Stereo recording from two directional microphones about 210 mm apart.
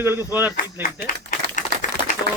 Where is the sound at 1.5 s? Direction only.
40° left (ahead or behind).